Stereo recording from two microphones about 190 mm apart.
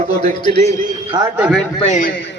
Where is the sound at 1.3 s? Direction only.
10° right (ahead or behind).